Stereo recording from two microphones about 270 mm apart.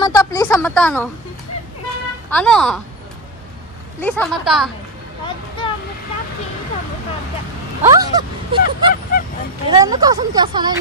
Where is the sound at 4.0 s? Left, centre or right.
Centre.